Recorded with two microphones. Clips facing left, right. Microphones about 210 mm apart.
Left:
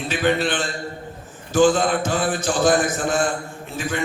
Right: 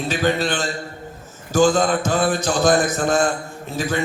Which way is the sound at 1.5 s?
45° right (ahead or behind).